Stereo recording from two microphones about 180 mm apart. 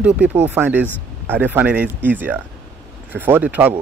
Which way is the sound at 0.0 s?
10° right (ahead or behind).